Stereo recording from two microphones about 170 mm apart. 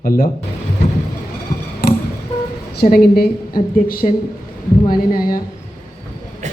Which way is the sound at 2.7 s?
65° left (ahead or behind).